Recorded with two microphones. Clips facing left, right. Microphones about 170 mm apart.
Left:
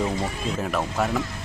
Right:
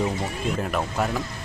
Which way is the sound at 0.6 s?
Centre (ahead or behind).